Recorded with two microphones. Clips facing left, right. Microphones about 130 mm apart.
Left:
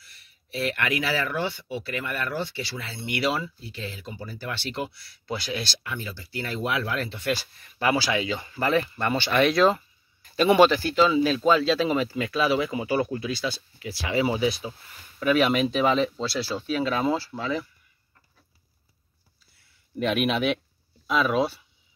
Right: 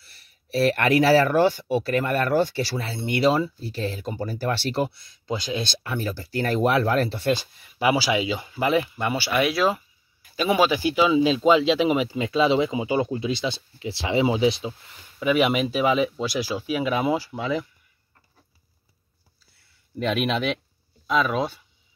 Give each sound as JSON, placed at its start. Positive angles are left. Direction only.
{"t": 0.0, "sound": "speech", "side_deg": -35}
{"t": 4.9, "sound": "speech", "side_deg": -20}
{"t": 5.9, "sound": "speech", "side_deg": -40}
{"t": 7.3, "sound": "speech", "side_deg": -15}
{"t": 10.8, "sound": "speech", "side_deg": -15}
{"t": 15.1, "sound": "speech", "side_deg": -10}
{"t": 20.0, "sound": "speech", "side_deg": 5}